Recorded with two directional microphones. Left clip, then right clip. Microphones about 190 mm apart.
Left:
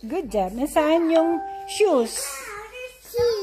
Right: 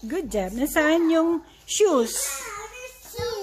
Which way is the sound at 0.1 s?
5° right (ahead or behind).